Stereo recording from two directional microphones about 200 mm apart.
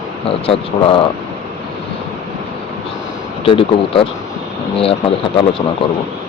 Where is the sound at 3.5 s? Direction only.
25° left (ahead or behind).